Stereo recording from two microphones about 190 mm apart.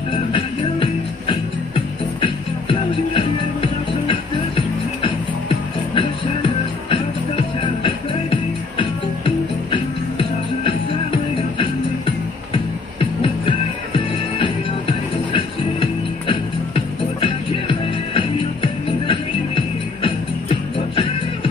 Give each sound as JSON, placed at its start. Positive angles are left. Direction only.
{"t": 0.1, "sound": "music", "side_deg": 25}
{"t": 13.0, "sound": "music", "side_deg": 30}